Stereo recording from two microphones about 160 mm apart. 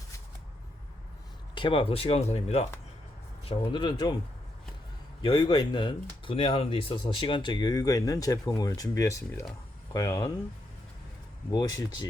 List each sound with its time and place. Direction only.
1.5 s speech: 35° left (ahead or behind)
3.5 s speech: 30° left (ahead or behind)
5.2 s speech: 25° left (ahead or behind)
11.5 s speech: 25° left (ahead or behind)